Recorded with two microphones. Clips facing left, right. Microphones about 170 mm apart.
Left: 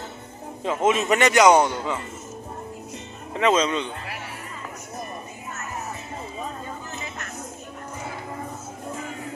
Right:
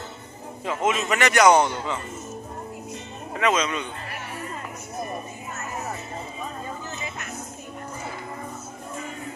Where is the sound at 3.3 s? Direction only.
30° left (ahead or behind).